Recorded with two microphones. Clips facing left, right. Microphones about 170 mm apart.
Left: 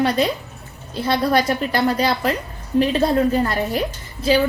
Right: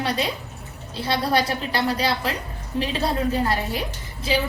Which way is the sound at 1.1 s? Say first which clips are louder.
Left 4 dB; 50° left (ahead or behind).